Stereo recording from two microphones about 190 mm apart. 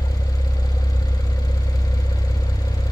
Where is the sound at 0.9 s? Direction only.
20° left (ahead or behind).